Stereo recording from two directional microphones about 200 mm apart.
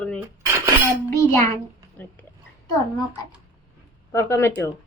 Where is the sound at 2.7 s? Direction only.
20° left (ahead or behind).